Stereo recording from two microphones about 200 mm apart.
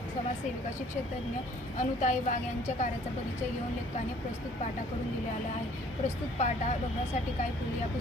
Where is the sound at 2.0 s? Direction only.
40° left (ahead or behind).